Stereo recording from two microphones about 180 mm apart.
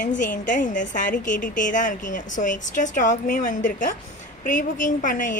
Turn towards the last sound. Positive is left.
turn(degrees=45)  # may be behind; listen again after turning